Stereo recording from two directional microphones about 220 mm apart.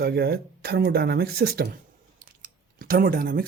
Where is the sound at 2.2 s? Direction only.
40° right (ahead or behind).